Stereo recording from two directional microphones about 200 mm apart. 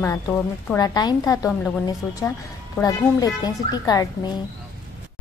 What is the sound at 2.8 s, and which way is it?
A child's voice, 20° left (ahead or behind).